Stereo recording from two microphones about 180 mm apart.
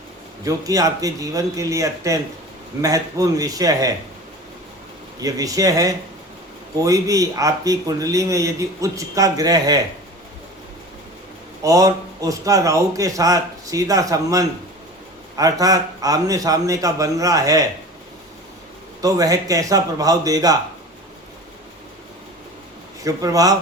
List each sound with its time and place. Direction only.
0.4 s speech: 20° right (ahead or behind)
5.2 s speech: 20° right (ahead or behind)
11.6 s speech: 20° right (ahead or behind)
19.0 s speech: 20° right (ahead or behind)
23.0 s speech: 20° right (ahead or behind)